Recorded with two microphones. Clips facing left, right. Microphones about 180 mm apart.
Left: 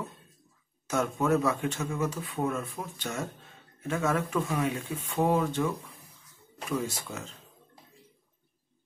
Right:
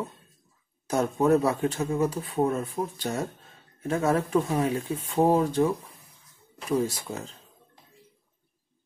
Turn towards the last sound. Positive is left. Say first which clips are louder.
# right 6 dB
turn(degrees=-35)  # may be behind; listen again after turning